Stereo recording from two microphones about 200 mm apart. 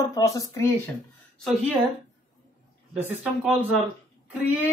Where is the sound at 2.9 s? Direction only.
5° right (ahead or behind).